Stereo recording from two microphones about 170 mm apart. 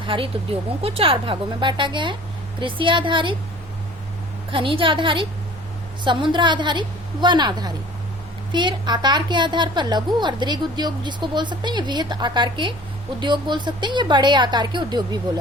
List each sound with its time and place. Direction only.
0.0 s a woman's voice: 30° right (ahead or behind)
4.5 s a woman's voice: 30° right (ahead or behind)